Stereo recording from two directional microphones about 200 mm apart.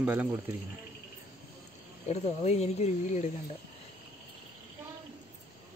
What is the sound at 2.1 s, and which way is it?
Speech, 35° left (ahead or behind).